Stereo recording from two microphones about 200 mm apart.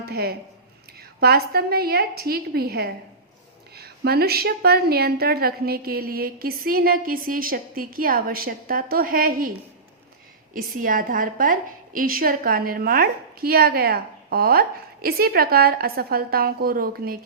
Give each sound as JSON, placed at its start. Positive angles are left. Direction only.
{"t": 0.0, "sound": "a woman's voice", "side_deg": -50}
{"t": 10.5, "sound": "a woman's voice", "side_deg": -45}